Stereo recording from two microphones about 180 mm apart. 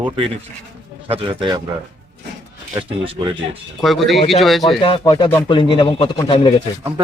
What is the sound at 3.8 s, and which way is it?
Speech, centre (ahead or behind).